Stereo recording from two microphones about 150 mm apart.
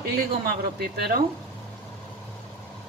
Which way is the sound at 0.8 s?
90° right.